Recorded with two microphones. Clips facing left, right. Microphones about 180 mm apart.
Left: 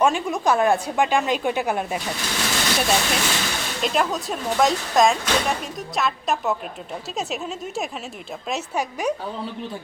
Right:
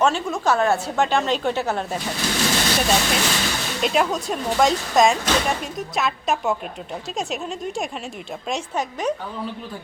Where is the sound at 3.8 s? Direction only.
Centre (ahead or behind).